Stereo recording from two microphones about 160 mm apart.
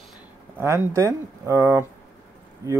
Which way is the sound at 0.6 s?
15° right (ahead or behind).